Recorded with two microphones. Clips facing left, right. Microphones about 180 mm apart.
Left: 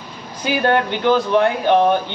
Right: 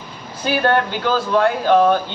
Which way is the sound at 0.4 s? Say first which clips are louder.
Even; 15° left (ahead or behind).